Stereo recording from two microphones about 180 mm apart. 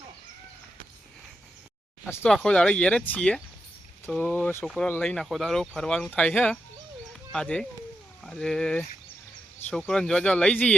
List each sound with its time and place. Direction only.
2.0 s speech: 15° left (ahead or behind)